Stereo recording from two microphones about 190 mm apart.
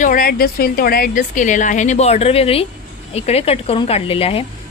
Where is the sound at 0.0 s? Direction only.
50° left (ahead or behind).